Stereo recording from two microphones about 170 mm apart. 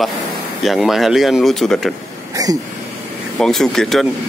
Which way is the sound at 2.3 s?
20° right (ahead or behind).